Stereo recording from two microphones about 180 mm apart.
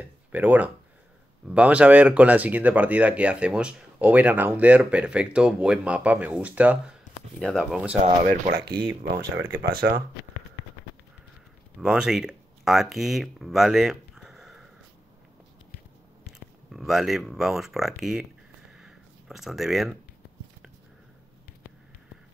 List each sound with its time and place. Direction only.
0.3 s speech: 10° right (ahead or behind)
7.3 s speech: 5° left (ahead or behind)
8.3 s speech: 55° right (ahead or behind)
9.3 s speech: 10° right (ahead or behind)
9.6 s speech: 60° right (ahead or behind)
11.8 s speech: 5° right (ahead or behind)
16.7 s speech: centre (ahead or behind)
18.7 s a sound: 5° right (ahead or behind)